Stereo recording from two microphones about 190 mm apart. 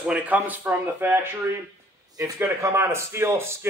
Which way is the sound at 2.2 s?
15° right (ahead or behind).